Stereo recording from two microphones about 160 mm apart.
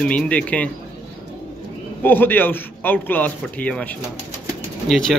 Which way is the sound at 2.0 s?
10° left (ahead or behind).